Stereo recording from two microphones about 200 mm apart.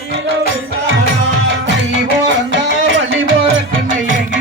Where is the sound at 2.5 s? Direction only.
70° right (ahead or behind).